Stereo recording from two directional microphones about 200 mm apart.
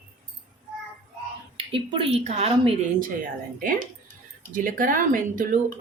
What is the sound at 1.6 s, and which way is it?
A woman's voice, 25° right (ahead or behind).